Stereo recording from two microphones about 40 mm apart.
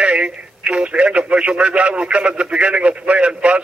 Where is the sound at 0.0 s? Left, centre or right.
Right.